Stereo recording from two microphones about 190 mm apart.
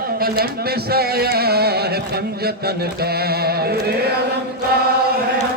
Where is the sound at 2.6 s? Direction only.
55° right (ahead or behind).